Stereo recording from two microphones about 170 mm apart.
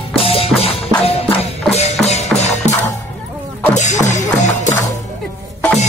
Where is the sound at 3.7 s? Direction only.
45° left (ahead or behind).